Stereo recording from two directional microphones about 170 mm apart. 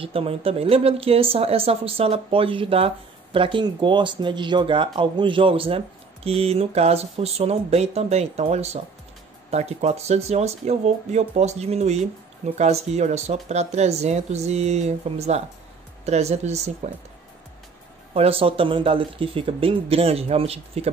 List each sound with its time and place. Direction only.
0.0 s speech: 35° right (ahead or behind)
18.1 s speech: 35° right (ahead or behind)